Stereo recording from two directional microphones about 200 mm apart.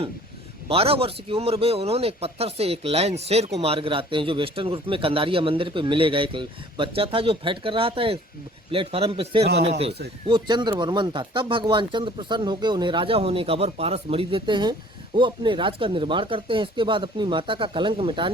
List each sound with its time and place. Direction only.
0.7 s a man's voice: 30° right (ahead or behind)